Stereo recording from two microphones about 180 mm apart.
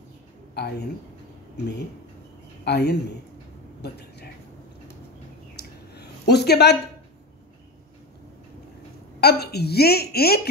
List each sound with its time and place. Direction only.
2.6 s a woman's voice: 65° left (ahead or behind)
5.6 s a sound: 65° left (ahead or behind)
9.2 s a woman's voice: 60° left (ahead or behind)